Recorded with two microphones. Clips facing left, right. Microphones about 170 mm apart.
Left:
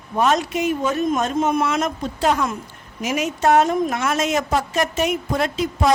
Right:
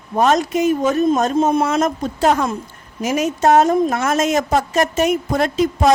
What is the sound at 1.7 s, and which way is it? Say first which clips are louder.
A woman's voice: right 4 dB; 45° right (ahead or behind).